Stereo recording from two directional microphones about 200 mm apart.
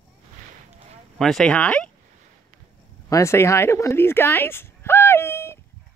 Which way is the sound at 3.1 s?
15° left (ahead or behind).